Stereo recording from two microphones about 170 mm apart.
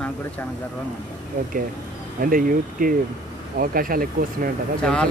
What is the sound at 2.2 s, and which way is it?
Speech, 55° right (ahead or behind).